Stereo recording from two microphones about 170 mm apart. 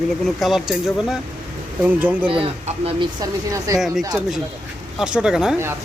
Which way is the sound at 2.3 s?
35° right (ahead or behind).